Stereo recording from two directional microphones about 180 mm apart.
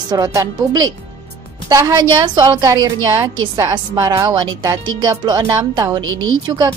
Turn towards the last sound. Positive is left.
turn(degrees=-25)  # may be behind; listen again after turning